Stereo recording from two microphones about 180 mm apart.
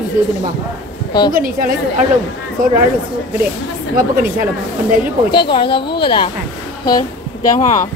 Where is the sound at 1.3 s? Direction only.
55° right (ahead or behind).